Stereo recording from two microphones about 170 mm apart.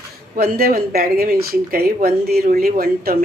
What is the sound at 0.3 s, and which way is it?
Speech, 60° right (ahead or behind).